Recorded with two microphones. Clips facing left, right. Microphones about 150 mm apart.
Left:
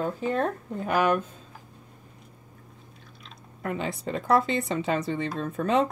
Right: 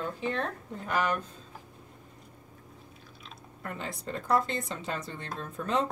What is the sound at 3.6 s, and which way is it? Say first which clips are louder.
Speech: left 8 dB; 70° left (ahead or behind).